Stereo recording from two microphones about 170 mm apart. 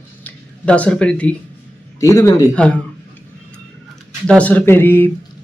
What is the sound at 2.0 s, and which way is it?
Speech, 20° left (ahead or behind).